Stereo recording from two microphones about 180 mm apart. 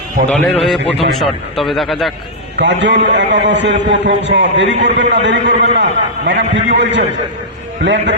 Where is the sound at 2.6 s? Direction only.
75° right (ahead or behind).